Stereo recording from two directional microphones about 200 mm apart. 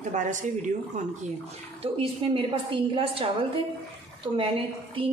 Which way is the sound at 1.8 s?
25° right (ahead or behind).